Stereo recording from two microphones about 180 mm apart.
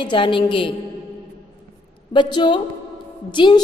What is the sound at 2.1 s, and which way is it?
A woman's voice, 25° left (ahead or behind).